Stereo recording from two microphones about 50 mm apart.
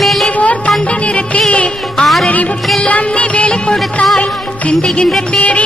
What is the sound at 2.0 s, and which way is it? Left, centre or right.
Music, centre.